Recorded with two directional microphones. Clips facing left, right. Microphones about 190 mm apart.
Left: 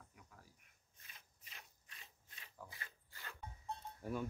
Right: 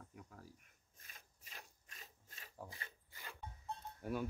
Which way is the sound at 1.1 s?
45° right (ahead or behind).